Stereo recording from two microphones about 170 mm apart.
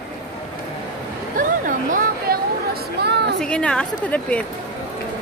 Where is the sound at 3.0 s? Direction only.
75° right (ahead or behind).